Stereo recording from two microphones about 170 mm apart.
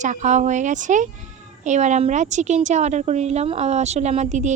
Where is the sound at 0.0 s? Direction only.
45° right (ahead or behind).